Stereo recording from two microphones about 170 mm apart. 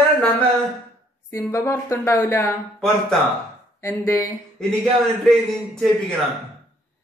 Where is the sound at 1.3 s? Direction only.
15° left (ahead or behind).